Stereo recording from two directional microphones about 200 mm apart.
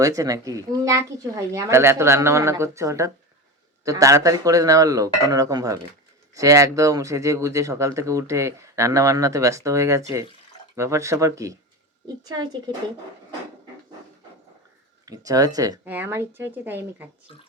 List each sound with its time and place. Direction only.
0.0 s a woman's voice: 15° right (ahead or behind)
15.0 s speech: 15° right (ahead or behind)